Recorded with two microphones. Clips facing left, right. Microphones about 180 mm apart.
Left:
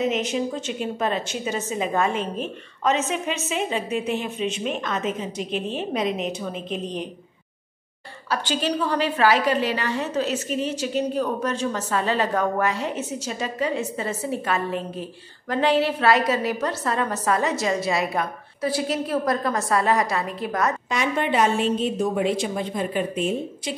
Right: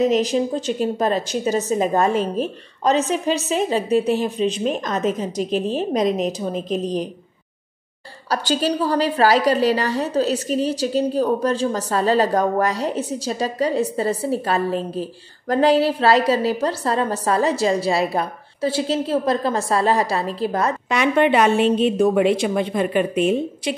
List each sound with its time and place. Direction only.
0.0 s a woman's voice: 35° right (ahead or behind)
8.3 s a woman's voice: 40° right (ahead or behind)
20.9 s a woman's voice: 65° right (ahead or behind)